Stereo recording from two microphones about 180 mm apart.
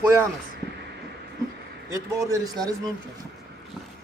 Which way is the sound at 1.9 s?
20° right (ahead or behind).